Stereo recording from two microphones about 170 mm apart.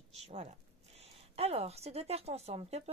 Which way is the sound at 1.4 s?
40° right (ahead or behind).